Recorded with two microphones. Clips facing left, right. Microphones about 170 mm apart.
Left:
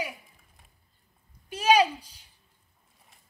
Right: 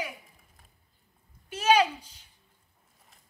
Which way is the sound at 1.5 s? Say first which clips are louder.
Left 1 dB; 10° left (ahead or behind).